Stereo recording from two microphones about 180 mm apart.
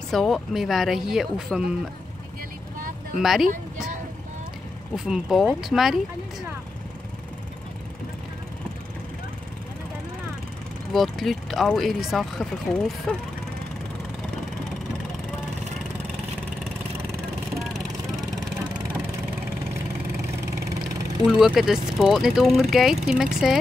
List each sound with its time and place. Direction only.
0.1 s speech: centre (ahead or behind)
3.2 s speech: centre (ahead or behind)
3.4 s speech: 45° right (ahead or behind)
4.9 s speech: 5° right (ahead or behind)
10.9 s speech: centre (ahead or behind)
20.5 s engine: 20° right (ahead or behind)
21.3 s speech: 5° right (ahead or behind)